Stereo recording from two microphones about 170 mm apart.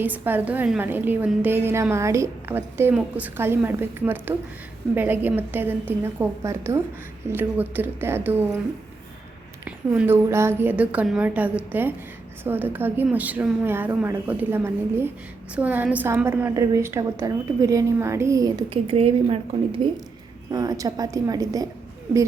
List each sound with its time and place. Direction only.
0.0 s a woman's voice: 10° right (ahead or behind)
9.6 s a woman's voice: 10° right (ahead or behind); by 19.9 s 30° right (ahead or behind)
20.5 s a woman's voice: 20° right (ahead or behind)